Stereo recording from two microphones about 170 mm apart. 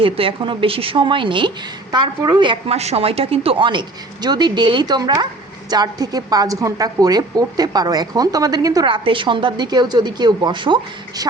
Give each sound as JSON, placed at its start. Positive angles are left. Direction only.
{"t": 0.0, "sound": "speech", "side_deg": -30}